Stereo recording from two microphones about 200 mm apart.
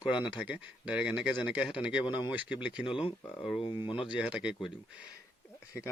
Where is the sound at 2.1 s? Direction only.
20° left (ahead or behind).